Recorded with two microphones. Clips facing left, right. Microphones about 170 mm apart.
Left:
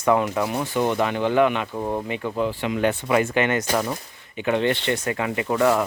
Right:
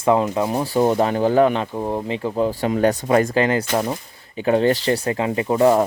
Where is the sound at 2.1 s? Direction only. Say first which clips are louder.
Right 4 dB; 30° right (ahead or behind).